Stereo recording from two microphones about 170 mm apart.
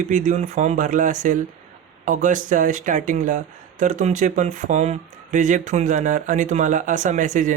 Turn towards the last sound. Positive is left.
turn(degrees=-50)  # may be behind; listen again after turning